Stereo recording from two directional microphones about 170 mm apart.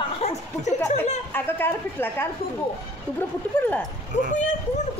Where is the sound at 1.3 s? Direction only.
10° left (ahead or behind).